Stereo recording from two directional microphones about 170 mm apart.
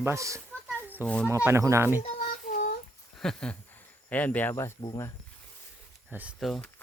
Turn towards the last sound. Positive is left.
turn(degrees=0)  # may be behind; listen again after turning